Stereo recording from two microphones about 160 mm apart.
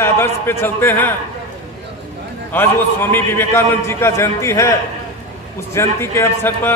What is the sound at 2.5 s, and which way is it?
A man's voice, 15° left (ahead or behind).